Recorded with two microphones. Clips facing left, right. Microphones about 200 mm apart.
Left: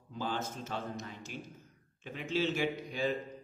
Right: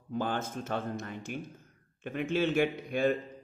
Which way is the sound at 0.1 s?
55° right (ahead or behind).